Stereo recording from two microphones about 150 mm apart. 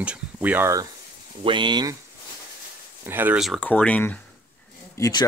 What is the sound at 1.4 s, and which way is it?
Speech, 35° right (ahead or behind).